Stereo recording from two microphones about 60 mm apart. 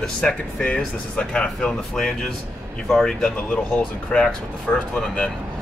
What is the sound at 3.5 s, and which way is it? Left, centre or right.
Speech, left.